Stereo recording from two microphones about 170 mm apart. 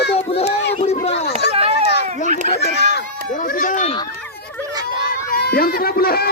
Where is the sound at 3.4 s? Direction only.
55° left (ahead or behind).